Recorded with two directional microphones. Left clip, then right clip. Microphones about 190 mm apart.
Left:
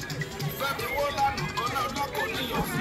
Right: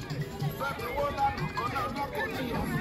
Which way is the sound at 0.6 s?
50° left (ahead or behind).